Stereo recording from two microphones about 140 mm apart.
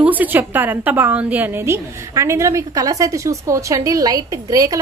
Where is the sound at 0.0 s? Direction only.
10° right (ahead or behind).